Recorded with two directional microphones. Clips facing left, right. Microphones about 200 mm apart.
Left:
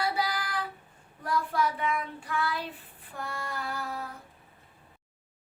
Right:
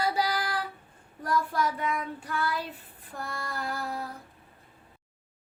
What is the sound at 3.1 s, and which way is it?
Female singing, 40° right (ahead or behind).